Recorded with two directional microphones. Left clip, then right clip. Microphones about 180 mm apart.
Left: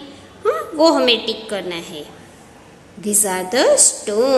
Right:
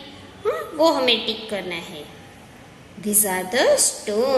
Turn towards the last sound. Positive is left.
turn(degrees=30)  # may be behind; listen again after turning